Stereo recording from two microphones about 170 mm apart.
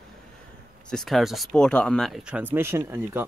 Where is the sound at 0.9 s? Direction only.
Centre (ahead or behind).